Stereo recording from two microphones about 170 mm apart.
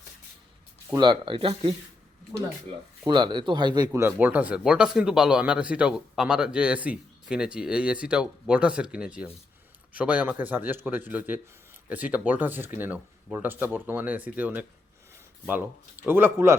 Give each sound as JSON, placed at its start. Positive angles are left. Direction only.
{"t": 0.9, "sound": "speech", "side_deg": -25}
{"t": 3.1, "sound": "speech", "side_deg": -25}
{"t": 3.9, "sound": "speech", "side_deg": -10}
{"t": 16.0, "sound": "speech", "side_deg": -10}